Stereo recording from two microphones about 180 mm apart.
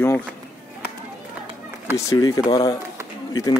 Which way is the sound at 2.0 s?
20° left (ahead or behind).